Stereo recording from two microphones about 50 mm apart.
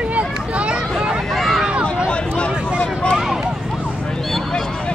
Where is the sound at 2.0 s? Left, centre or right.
Left.